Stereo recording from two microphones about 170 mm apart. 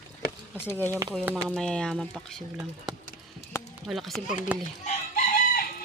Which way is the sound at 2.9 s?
25° right (ahead or behind).